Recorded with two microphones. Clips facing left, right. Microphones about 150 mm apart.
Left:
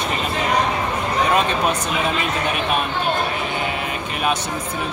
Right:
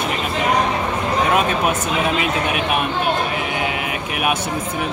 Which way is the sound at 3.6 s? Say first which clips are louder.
Right 1 dB; 10° right (ahead or behind).